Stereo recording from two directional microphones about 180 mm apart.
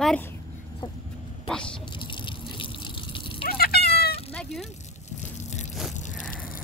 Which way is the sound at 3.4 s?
60° left (ahead or behind).